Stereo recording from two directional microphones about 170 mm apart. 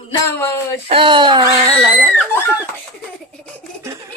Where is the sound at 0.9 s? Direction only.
30° right (ahead or behind).